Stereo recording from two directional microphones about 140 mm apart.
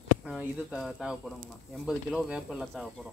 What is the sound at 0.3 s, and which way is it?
Speech, 5° right (ahead or behind).